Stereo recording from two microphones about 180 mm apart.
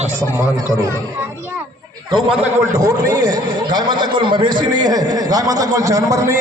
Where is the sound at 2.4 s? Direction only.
20° right (ahead or behind).